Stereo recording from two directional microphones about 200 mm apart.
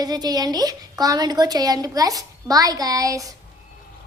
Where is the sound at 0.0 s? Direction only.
20° right (ahead or behind).